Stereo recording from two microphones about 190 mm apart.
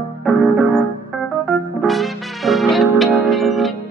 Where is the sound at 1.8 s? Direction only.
Centre (ahead or behind).